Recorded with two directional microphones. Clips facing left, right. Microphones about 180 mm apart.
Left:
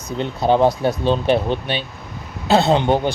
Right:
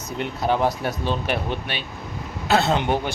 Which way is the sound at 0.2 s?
25° left (ahead or behind).